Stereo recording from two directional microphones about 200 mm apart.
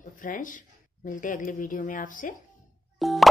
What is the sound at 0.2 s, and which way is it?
Speech, 40° left (ahead or behind).